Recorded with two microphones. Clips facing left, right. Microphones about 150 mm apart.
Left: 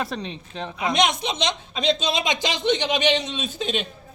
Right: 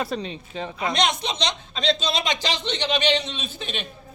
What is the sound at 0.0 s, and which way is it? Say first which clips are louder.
Speech: right 1 dB; centre (ahead or behind).